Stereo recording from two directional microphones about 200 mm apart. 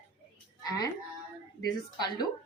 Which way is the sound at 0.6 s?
20° left (ahead or behind).